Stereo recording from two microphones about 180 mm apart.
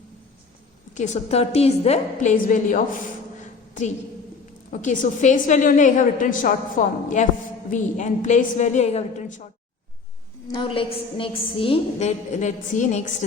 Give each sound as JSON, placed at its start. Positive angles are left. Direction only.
{"t": 0.9, "sound": "a woman's voice", "side_deg": 40}
{"t": 3.4, "sound": "a sound", "side_deg": 45}
{"t": 4.7, "sound": "a woman's voice", "side_deg": 45}
{"t": 10.5, "sound": "a woman's voice", "side_deg": 30}